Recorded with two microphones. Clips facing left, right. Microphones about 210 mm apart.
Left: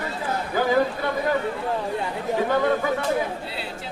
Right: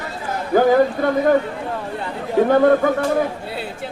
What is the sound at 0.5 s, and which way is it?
Speech, 50° right (ahead or behind).